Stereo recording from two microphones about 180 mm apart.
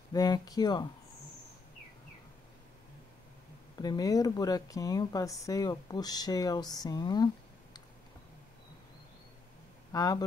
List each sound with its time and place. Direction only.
0.1 s speech: 20° left (ahead or behind)
3.7 s speech: 20° left (ahead or behind)
9.9 s speech: 20° left (ahead or behind)